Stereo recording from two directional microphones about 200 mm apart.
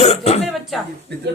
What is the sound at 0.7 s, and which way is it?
Speech, centre (ahead or behind).